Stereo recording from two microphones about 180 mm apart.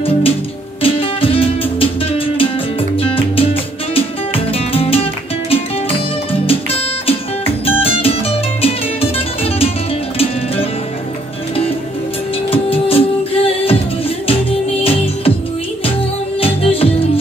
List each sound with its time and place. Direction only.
0.8 s music: 30° left (ahead or behind)
12.4 s music: 30° left (ahead or behind)
16.3 s music: 30° left (ahead or behind)